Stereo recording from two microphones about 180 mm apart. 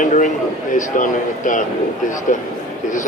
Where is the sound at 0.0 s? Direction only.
45° left (ahead or behind).